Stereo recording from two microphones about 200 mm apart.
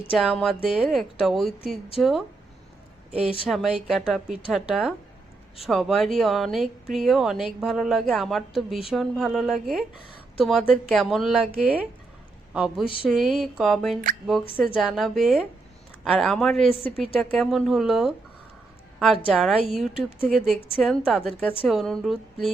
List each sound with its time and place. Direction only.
0.1 s speech: centre (ahead or behind)
3.5 s speech: centre (ahead or behind)
19.9 s speech: 25° left (ahead or behind)
20.2 s speech: centre (ahead or behind)